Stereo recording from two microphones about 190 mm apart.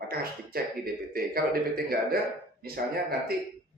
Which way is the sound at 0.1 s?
50° right (ahead or behind).